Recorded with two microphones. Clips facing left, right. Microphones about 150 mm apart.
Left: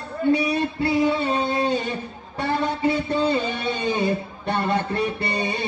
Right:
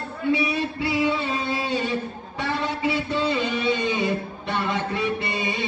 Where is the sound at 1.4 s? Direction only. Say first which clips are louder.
Left 3 dB; 50° left (ahead or behind).